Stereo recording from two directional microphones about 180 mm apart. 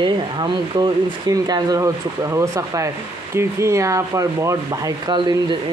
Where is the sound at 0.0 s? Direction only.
25° right (ahead or behind).